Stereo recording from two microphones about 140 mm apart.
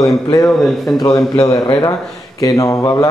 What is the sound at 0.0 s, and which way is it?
Speech, 25° left (ahead or behind).